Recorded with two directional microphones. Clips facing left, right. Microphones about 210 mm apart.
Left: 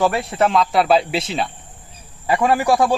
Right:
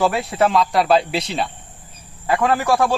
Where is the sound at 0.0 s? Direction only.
Centre (ahead or behind).